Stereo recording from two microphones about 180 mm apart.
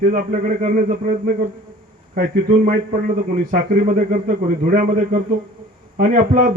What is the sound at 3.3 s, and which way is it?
A man's voice, 50° right (ahead or behind).